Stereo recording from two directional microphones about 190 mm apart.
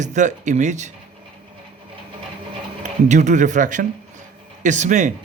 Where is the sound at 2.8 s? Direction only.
40° right (ahead or behind).